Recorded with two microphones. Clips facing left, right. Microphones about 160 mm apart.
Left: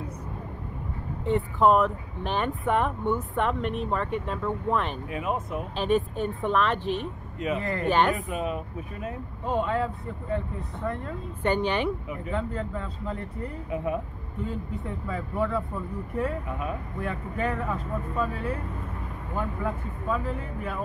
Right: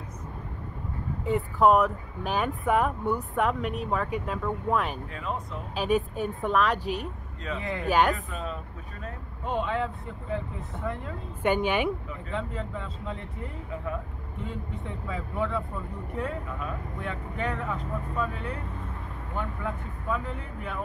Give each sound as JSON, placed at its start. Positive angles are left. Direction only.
{"t": 1.2, "sound": "speech", "side_deg": 0}
{"t": 5.1, "sound": "speech", "side_deg": 15}
{"t": 5.8, "sound": "speech", "side_deg": -5}
{"t": 6.8, "sound": "speech", "side_deg": -40}
{"t": 7.5, "sound": "speech", "side_deg": 0}
{"t": 8.1, "sound": "speech", "side_deg": 20}
{"t": 9.4, "sound": "speech", "side_deg": 0}
{"t": 12.3, "sound": "speech", "side_deg": 0}